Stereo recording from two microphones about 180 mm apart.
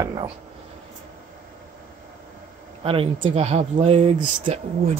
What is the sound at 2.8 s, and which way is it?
Speech, 30° right (ahead or behind).